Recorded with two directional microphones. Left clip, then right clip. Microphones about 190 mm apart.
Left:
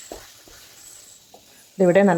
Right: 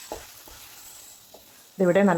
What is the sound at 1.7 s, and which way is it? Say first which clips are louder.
Speech: left 4 dB; 20° left (ahead or behind).